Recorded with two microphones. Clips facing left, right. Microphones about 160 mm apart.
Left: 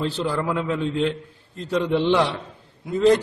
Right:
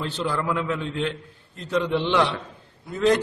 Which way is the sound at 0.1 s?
35° left (ahead or behind).